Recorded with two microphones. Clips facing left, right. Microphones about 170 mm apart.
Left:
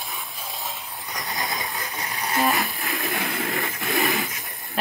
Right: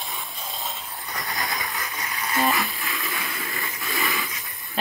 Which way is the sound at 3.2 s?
50° left (ahead or behind).